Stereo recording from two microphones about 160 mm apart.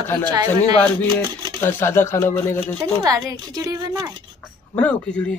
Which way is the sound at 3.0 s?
25° right (ahead or behind).